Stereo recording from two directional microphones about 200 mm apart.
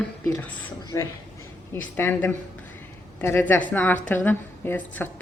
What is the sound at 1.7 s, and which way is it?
A woman's voice, 10° left (ahead or behind).